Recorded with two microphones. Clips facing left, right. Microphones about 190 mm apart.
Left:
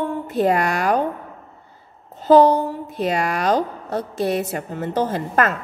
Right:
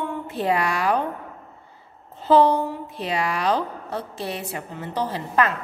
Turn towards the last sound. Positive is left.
turn(degrees=45)  # may be behind; listen again after turning